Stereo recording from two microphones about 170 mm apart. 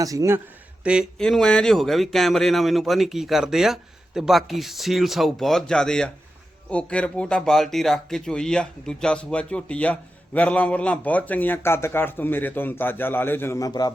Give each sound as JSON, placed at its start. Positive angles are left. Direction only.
{"t": 0.0, "sound": "speech", "side_deg": -20}
{"t": 1.2, "sound": "speech", "side_deg": 5}